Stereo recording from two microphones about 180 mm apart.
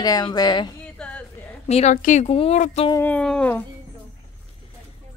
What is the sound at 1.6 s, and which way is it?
Speech, 40° left (ahead or behind).